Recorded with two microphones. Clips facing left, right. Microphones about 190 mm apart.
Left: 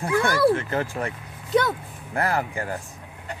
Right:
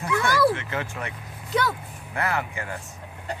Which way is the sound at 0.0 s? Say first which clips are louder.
Left 2 dB; 35° left (ahead or behind).